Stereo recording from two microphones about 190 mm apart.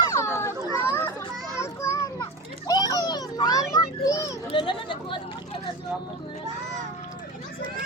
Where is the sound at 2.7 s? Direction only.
20° left (ahead or behind).